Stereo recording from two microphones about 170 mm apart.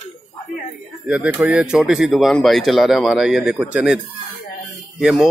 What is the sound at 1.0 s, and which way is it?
Speech, 5° right (ahead or behind).